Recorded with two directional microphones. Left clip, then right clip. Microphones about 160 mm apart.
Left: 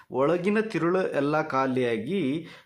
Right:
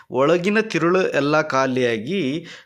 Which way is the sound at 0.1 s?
20° right (ahead or behind).